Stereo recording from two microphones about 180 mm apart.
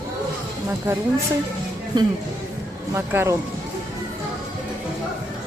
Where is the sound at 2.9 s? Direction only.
15° right (ahead or behind).